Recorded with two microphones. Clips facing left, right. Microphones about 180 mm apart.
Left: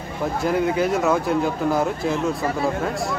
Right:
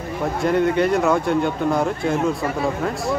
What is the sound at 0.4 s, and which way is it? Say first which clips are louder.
Speech: right 3 dB; centre (ahead or behind).